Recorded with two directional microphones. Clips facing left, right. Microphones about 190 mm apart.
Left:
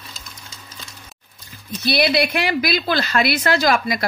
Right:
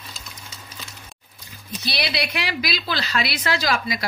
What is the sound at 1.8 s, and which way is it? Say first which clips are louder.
A woman's voice: left 9 dB; 50° left (ahead or behind).